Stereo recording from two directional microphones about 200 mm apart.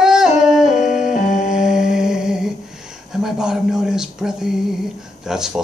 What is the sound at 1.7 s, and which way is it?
Mantra, centre (ahead or behind).